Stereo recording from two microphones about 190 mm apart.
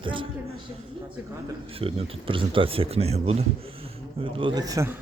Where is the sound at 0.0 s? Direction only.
25° right (ahead or behind).